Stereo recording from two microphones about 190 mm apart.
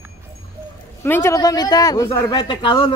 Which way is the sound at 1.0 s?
10° left (ahead or behind).